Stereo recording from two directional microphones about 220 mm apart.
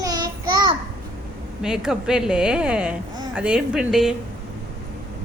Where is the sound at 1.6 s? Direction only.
5° right (ahead or behind).